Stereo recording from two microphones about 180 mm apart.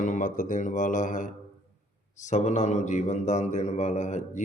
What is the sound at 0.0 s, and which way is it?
A man's voice, 45° left (ahead or behind).